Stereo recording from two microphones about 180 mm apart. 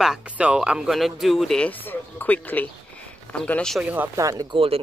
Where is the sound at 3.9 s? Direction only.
15° right (ahead or behind).